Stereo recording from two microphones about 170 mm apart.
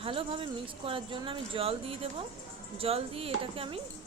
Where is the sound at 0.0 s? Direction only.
35° right (ahead or behind).